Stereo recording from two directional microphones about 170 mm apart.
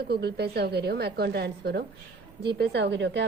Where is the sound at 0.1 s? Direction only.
75° right (ahead or behind).